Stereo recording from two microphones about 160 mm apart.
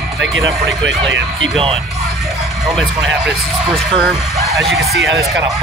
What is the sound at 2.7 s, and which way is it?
Speech, centre (ahead or behind).